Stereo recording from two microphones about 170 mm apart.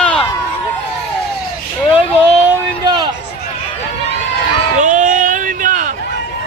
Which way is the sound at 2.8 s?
25° right (ahead or behind).